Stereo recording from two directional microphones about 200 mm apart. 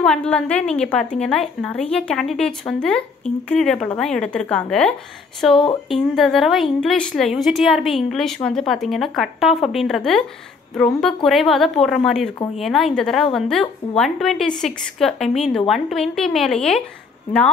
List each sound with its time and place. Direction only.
0.0 s a woman's voice: 5° left (ahead or behind)
11.2 s a woman's voice: centre (ahead or behind)